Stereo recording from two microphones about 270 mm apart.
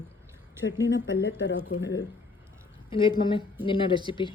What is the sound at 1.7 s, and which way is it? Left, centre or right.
Speech, left.